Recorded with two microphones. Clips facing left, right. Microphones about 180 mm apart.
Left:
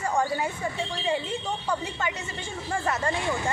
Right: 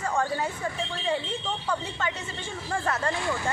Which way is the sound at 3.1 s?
25° left (ahead or behind).